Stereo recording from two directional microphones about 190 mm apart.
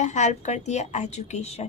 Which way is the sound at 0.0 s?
40° left (ahead or behind).